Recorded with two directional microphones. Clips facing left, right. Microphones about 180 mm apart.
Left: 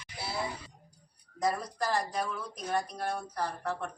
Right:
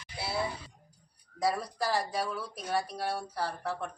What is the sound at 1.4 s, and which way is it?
Speech, 5° right (ahead or behind).